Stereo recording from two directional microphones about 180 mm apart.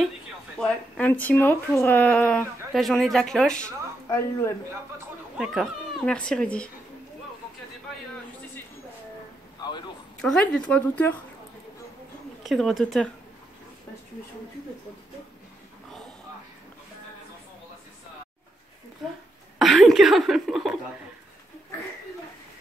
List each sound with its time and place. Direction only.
0.6 s speech: 5° left (ahead or behind)
4.1 s speech: 15° left (ahead or behind)
5.4 s speech: centre (ahead or behind)
9.6 s a sound: 25° left (ahead or behind)
10.2 s speech: 5° left (ahead or behind)
12.4 s speech: centre (ahead or behind)
19.6 s speech: centre (ahead or behind)